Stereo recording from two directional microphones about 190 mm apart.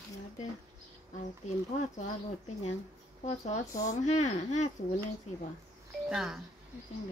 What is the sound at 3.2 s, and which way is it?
Speech, 40° left (ahead or behind).